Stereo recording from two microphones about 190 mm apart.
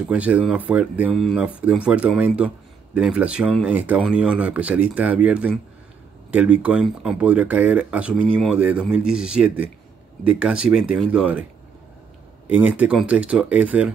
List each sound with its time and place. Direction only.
0.1 s speech: 5° right (ahead or behind)
12.4 s speech: 10° right (ahead or behind)